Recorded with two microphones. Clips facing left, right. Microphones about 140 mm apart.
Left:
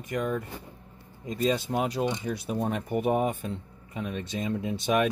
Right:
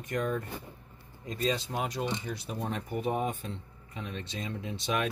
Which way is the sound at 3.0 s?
60° left (ahead or behind).